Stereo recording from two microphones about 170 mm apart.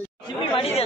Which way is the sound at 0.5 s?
35° left (ahead or behind).